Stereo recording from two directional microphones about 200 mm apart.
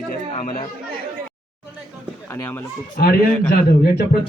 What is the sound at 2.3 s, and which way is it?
Speech, 10° left (ahead or behind).